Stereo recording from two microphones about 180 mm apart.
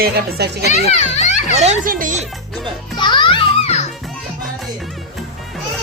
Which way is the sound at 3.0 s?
25° left (ahead or behind).